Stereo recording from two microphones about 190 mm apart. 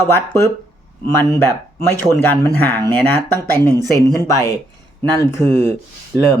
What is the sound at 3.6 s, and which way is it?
Speech, 20° right (ahead or behind).